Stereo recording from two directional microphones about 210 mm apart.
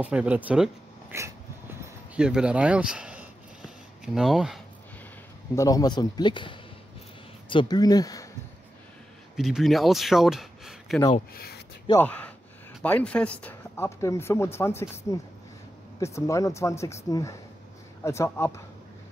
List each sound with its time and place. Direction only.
0.0 s speech: 5° right (ahead or behind)
1.1 s dog: 10° right (ahead or behind)
5.5 s speech: 15° left (ahead or behind)
9.4 s speech: centre (ahead or behind)
11.3 s speech: 50° left (ahead or behind)
11.9 s speech: 10° left (ahead or behind)